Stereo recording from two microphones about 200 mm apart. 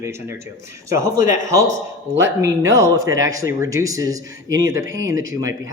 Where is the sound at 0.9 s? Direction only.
15° right (ahead or behind).